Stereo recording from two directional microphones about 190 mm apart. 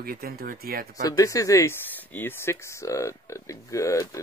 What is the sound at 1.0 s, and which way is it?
Speech, 20° left (ahead or behind).